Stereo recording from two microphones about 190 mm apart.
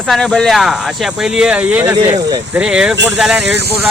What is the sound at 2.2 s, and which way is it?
Speech, 20° right (ahead or behind).